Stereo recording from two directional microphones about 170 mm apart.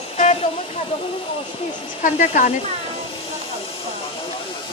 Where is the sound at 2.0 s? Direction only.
50° left (ahead or behind).